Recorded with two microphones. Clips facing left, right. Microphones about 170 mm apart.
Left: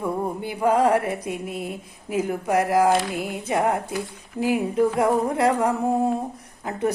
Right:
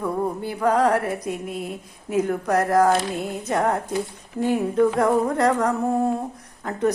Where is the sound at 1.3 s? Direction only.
Centre (ahead or behind).